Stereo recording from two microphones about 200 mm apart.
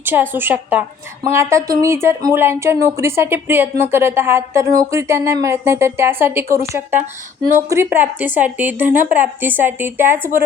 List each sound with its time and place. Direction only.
0.0 s a woman's voice: 10° right (ahead or behind)